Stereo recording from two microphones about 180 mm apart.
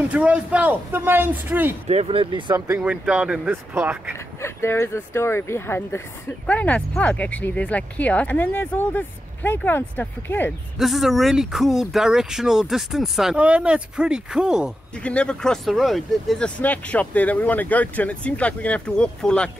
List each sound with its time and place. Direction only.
0.1 s a man's voice: 5° right (ahead or behind)
1.9 s speech: 35° right (ahead or behind)
2.5 s a man's voice: 10° right (ahead or behind)
4.4 s speech: 15° left (ahead or behind)
10.8 s speech: centre (ahead or behind)